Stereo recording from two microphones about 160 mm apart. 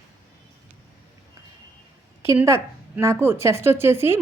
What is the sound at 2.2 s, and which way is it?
A woman's voice, 15° right (ahead or behind).